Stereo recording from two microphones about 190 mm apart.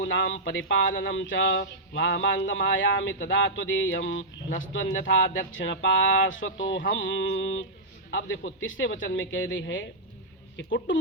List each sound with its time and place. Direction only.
0.0 s speech: 75° left (ahead or behind)